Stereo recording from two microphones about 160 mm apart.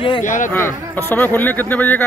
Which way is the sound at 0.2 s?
50° left (ahead or behind).